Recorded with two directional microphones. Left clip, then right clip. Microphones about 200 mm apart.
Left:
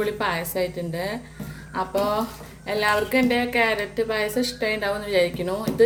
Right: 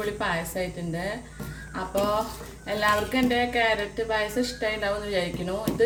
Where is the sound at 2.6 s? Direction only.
50° left (ahead or behind).